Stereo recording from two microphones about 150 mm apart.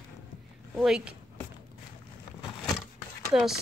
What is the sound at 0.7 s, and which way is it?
Speech, 5° right (ahead or behind).